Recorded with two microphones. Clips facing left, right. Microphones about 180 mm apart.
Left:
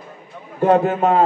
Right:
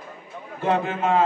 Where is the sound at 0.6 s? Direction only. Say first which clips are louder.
Left 8 dB; 45° left (ahead or behind).